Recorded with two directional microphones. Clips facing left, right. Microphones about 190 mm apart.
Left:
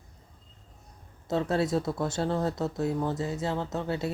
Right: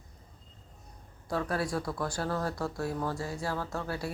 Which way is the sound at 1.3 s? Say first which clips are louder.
Left 5 dB; 25° left (ahead or behind).